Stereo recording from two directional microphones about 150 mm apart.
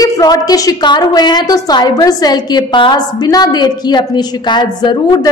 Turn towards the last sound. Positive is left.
turn(degrees=30)  # may be behind; listen again after turning